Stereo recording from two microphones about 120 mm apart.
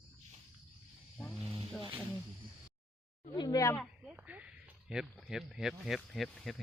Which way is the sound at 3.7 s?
5° right (ahead or behind).